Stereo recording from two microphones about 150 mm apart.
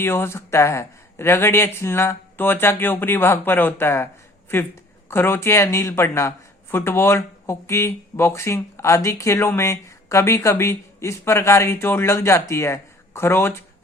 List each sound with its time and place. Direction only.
0.0 s speech: 15° left (ahead or behind)